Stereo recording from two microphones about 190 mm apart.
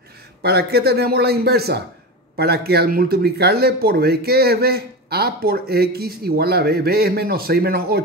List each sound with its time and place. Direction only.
0.4 s speech: 55° right (ahead or behind)